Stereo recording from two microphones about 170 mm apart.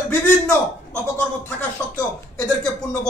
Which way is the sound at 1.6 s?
5° left (ahead or behind).